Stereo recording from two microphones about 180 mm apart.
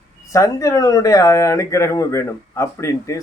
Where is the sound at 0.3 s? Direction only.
15° left (ahead or behind).